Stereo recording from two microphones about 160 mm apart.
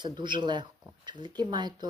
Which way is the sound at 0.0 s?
30° right (ahead or behind).